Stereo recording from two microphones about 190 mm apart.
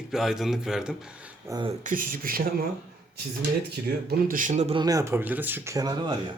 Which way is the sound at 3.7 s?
55° right (ahead or behind).